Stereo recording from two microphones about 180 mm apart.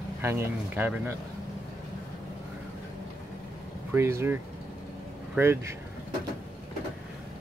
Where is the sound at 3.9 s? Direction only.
15° right (ahead or behind).